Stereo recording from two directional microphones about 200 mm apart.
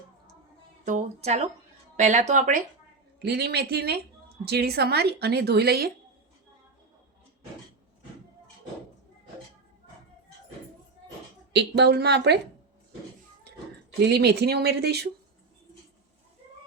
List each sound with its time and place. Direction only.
0.9 s speech: 35° right (ahead or behind)
3.2 s a woman's voice: 55° right (ahead or behind)
11.5 s speech: 55° right (ahead or behind)
14.1 s speech: 55° right (ahead or behind)